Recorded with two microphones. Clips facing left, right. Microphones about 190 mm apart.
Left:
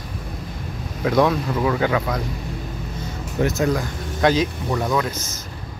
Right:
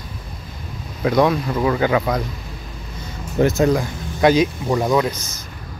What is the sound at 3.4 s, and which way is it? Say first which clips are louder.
Speech: right 5 dB; 35° right (ahead or behind).